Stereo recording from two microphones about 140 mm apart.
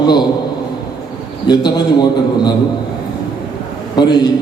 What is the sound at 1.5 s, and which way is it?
A man's voice, 30° left (ahead or behind).